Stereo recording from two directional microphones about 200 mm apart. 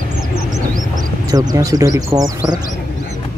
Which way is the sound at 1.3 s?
15° right (ahead or behind).